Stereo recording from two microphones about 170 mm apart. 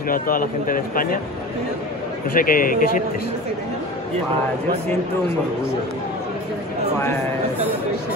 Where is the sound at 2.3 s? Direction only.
55° left (ahead or behind).